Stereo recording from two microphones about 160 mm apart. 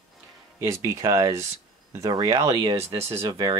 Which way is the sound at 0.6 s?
15° right (ahead or behind).